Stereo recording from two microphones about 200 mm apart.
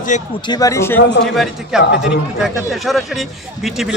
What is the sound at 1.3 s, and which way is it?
Speech, centre (ahead or behind).